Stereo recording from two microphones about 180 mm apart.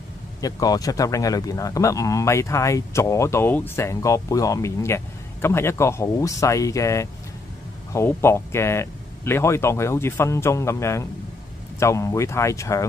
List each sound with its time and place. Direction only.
0.4 s a man's voice: 20° left (ahead or behind)